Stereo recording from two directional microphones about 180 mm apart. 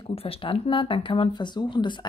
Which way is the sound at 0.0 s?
30° left (ahead or behind).